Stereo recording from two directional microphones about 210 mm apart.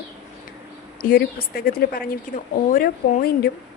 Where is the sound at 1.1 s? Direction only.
45° left (ahead or behind).